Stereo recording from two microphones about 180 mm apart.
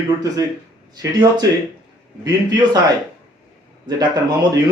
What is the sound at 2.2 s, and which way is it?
Speech, 20° right (ahead or behind).